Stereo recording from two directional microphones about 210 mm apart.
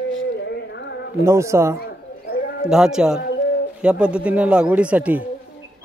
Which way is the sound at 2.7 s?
5° right (ahead or behind).